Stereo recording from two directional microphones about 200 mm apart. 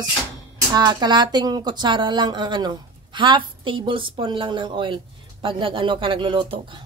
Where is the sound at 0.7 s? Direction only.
20° right (ahead or behind).